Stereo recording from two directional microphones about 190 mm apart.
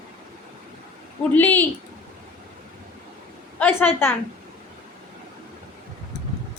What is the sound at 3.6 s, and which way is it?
Speech, 10° left (ahead or behind).